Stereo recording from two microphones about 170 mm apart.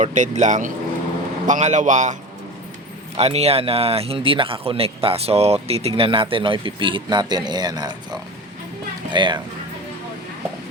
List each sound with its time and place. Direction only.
0.0 s a man's voice: 45° right (ahead or behind)
3.2 s speech: 40° right (ahead or behind)